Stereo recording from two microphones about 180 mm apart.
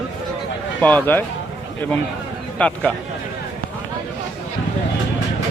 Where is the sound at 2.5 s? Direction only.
5° left (ahead or behind).